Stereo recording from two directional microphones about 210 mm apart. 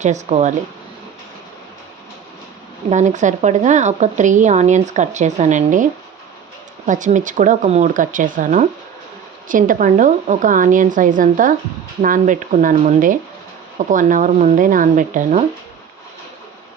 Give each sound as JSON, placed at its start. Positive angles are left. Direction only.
{"t": 0.0, "sound": "a woman's voice", "side_deg": -30}
{"t": 2.9, "sound": "a woman's voice", "side_deg": -35}